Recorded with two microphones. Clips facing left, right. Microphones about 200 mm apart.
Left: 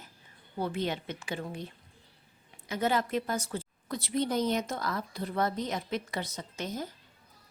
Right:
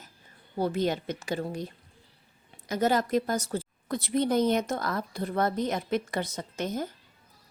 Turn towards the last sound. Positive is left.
turn(degrees=-55)  # may be behind; listen again after turning